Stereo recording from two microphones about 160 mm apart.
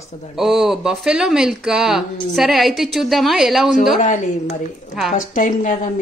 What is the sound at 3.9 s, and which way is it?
A woman's voice, 50° left (ahead or behind).